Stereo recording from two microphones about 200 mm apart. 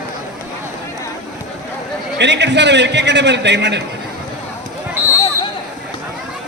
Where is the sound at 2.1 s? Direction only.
60° right (ahead or behind).